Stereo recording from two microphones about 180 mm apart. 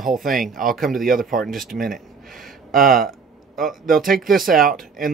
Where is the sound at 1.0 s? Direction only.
50° right (ahead or behind).